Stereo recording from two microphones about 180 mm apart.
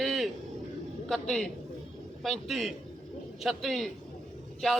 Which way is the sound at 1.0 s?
5° left (ahead or behind).